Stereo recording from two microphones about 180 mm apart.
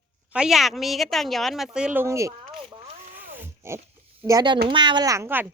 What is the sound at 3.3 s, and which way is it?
Pig, 15° right (ahead or behind).